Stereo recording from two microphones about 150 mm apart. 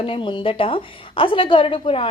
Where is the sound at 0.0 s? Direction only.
35° left (ahead or behind).